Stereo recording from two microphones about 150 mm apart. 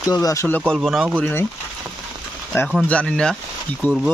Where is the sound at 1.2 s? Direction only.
15° left (ahead or behind).